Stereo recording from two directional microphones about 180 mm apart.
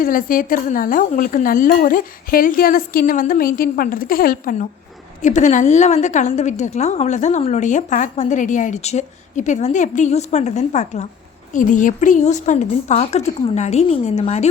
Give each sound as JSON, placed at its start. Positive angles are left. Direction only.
{"t": 0.0, "sound": "a woman's voice", "side_deg": 50}
{"t": 5.2, "sound": "a woman's voice", "side_deg": 45}